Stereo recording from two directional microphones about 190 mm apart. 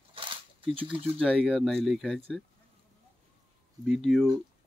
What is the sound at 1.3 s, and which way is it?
Speech, 5° right (ahead or behind).